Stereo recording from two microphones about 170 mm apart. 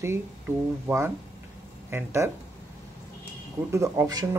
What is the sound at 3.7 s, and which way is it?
Speech, 20° right (ahead or behind).